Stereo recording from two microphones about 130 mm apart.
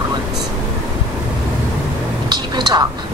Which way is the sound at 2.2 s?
35° right (ahead or behind).